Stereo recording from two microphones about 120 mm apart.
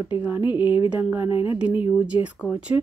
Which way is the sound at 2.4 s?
10° right (ahead or behind).